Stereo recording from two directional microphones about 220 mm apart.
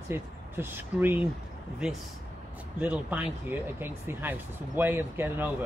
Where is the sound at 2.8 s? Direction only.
5° right (ahead or behind).